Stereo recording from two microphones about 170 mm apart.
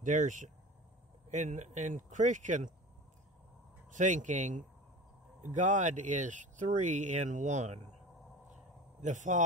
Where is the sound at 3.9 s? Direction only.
45° right (ahead or behind).